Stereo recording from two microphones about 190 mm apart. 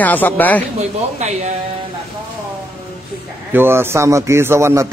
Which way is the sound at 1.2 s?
35° right (ahead or behind).